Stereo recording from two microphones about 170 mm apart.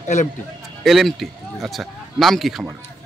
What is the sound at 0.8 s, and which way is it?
A man's voice, centre (ahead or behind).